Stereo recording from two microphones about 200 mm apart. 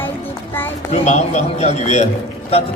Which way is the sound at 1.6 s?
35° left (ahead or behind).